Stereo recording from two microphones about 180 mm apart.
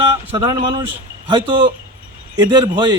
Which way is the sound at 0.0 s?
30° right (ahead or behind).